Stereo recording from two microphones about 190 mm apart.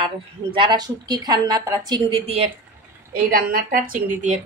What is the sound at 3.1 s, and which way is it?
A woman's voice, 50° right (ahead or behind).